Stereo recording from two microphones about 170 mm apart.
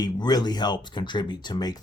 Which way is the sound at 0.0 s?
25° left (ahead or behind).